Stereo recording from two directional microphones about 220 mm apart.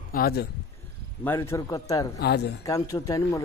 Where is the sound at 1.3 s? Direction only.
15° left (ahead or behind).